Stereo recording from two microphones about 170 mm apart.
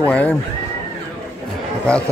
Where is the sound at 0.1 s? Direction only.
10° left (ahead or behind).